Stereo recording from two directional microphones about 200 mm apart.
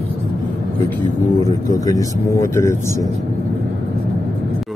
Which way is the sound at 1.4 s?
15° left (ahead or behind).